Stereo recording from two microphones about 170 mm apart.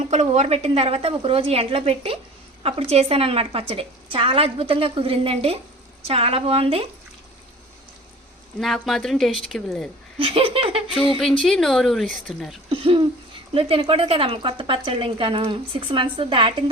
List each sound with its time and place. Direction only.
0.1 s a woman's voice: 40° right (ahead or behind)
8.5 s speech: centre (ahead or behind)
10.2 s a woman's voice: 30° right (ahead or behind)
11.2 s speech: 5° left (ahead or behind)
12.6 s a sound: 35° right (ahead or behind)
13.5 s a woman's voice: 35° right (ahead or behind)